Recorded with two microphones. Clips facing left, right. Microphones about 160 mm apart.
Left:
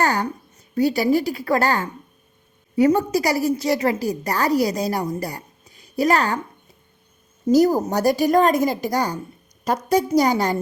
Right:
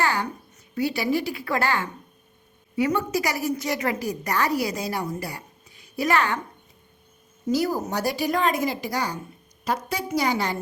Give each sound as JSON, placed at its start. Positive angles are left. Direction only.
{"t": 0.0, "sound": "a sound", "side_deg": 45}
{"t": 0.7, "sound": "a woman's voice", "side_deg": 40}
{"t": 7.4, "sound": "speech", "side_deg": 45}